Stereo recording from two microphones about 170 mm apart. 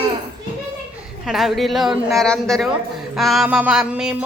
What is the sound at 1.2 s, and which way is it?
A man's voice, centre (ahead or behind).